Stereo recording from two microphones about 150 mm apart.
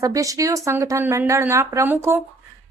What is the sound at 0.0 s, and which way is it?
A woman's voice, 20° right (ahead or behind).